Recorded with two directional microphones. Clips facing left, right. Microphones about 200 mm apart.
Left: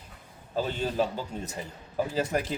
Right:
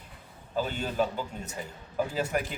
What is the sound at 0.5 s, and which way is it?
Speech, 35° left (ahead or behind).